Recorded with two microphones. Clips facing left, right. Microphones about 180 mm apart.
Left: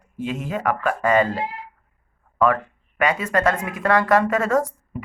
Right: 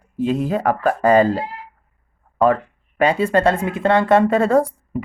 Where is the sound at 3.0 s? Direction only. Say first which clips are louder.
Right 5 dB; 30° right (ahead or behind).